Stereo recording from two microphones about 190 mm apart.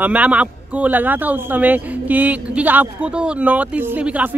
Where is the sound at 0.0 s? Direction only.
5° right (ahead or behind).